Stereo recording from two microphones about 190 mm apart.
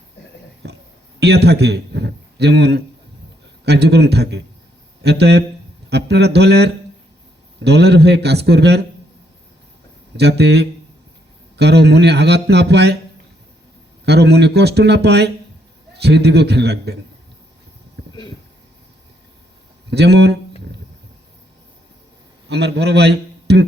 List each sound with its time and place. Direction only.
0.6 s a sound: 60° right (ahead or behind)
1.2 s a man's voice: 60° right (ahead or behind)
10.2 s a man's voice: 60° right (ahead or behind)
14.0 s a man's voice: 60° right (ahead or behind)
19.9 s a man's voice: 60° right (ahead or behind)
22.4 s a man's voice: 60° right (ahead or behind)